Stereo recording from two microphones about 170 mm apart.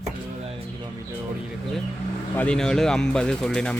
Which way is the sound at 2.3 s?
5° left (ahead or behind).